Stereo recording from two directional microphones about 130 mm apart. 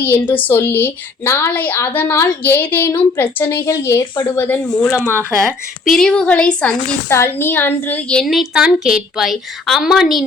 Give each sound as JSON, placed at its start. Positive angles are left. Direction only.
{"t": 0.0, "sound": "a woman's voice", "side_deg": 15}
{"t": 4.9, "sound": "speech", "side_deg": -15}
{"t": 5.4, "sound": "a woman's voice", "side_deg": 0}
{"t": 7.1, "sound": "a woman's voice", "side_deg": 20}